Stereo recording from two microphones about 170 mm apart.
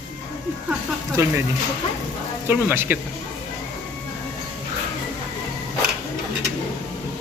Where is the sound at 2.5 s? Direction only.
10° right (ahead or behind).